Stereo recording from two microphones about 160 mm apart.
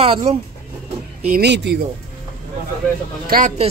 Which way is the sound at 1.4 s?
90° right.